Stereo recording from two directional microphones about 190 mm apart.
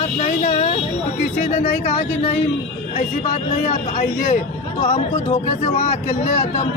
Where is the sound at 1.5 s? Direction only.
40° left (ahead or behind).